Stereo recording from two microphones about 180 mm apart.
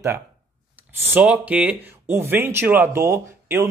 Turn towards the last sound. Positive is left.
turn(degrees=-15)  # may be behind; listen again after turning